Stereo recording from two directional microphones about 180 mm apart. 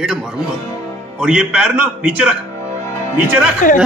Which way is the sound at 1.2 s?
5° right (ahead or behind).